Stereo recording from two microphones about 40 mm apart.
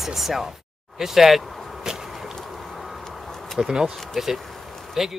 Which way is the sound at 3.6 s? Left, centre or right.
Centre.